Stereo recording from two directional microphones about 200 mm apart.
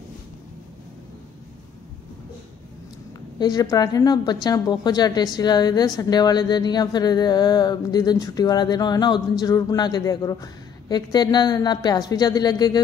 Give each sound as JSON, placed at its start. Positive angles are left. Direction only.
{"t": 3.3, "sound": "a woman's voice", "side_deg": 20}